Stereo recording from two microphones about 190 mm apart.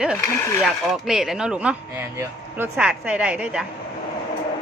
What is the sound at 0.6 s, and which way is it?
Speech, centre (ahead or behind).